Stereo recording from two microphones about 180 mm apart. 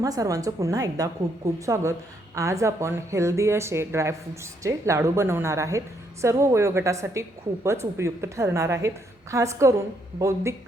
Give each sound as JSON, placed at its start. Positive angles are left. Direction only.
{"t": 0.0, "sound": "a woman's voice", "side_deg": -20}